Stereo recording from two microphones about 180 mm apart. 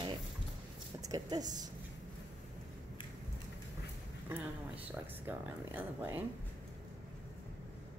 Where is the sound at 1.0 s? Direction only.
20° right (ahead or behind).